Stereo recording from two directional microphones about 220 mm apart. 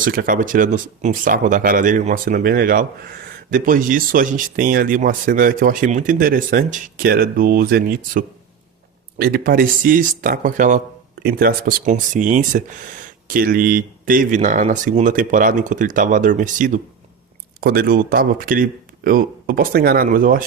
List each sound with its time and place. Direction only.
0.0 s speech: 40° right (ahead or behind)